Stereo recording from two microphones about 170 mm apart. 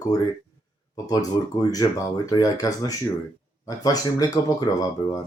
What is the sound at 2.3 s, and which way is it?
Speech, 20° left (ahead or behind).